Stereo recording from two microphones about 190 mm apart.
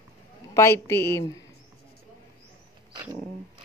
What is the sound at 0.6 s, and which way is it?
Speech, 15° left (ahead or behind).